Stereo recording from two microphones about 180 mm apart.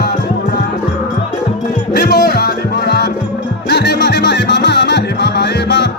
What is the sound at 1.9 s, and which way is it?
Music, 60° left (ahead or behind).